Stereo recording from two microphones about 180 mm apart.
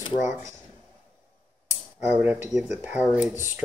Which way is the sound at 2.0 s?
10° right (ahead or behind).